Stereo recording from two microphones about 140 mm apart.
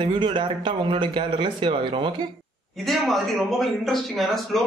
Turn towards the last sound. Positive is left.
turn(degrees=0)  # may be behind; listen again after turning